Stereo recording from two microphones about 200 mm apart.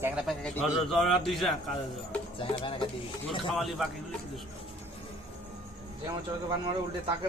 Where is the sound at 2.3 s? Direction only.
25° left (ahead or behind).